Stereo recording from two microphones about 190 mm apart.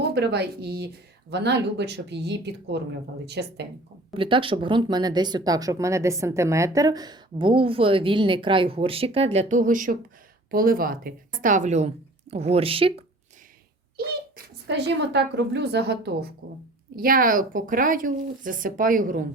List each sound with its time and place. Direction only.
0.1 s a woman's voice: 60° right (ahead or behind)
4.1 s speech: 25° right (ahead or behind)
14.7 s a woman's voice: 65° right (ahead or behind); by 19.2 s 45° right (ahead or behind)